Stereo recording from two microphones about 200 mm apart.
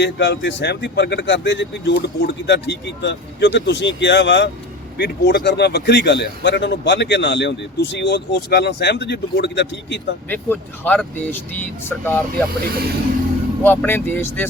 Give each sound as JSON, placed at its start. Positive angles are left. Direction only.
{"t": 0.0, "sound": "speech", "side_deg": 60}
{"t": 10.2, "sound": "speech", "side_deg": 10}
{"t": 12.5, "sound": "speech", "side_deg": -50}
{"t": 13.6, "sound": "speech", "side_deg": 10}